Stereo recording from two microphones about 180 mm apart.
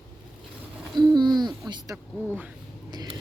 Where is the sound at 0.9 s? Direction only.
25° right (ahead or behind).